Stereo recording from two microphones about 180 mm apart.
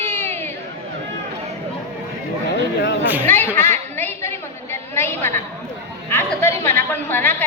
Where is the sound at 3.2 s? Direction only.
10° left (ahead or behind).